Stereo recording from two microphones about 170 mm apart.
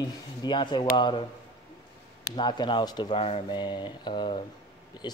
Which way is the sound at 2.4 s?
25° left (ahead or behind).